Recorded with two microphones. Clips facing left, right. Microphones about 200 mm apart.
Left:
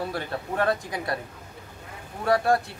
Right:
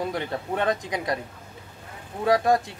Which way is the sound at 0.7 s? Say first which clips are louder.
Right 1 dB; 20° right (ahead or behind).